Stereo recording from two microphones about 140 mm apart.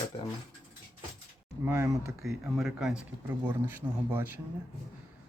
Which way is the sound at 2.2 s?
Centre (ahead or behind).